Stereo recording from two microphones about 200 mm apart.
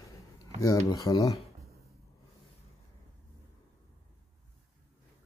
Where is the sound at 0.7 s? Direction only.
15° left (ahead or behind).